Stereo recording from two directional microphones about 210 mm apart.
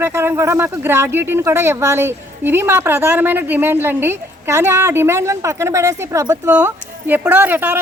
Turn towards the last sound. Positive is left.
turn(degrees=-10)  # may be behind; listen again after turning